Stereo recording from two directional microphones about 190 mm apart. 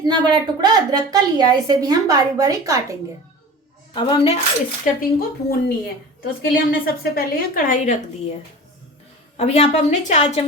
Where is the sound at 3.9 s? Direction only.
25° left (ahead or behind).